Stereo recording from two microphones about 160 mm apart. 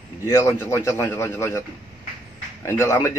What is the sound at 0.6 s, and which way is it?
A man's voice, 15° left (ahead or behind).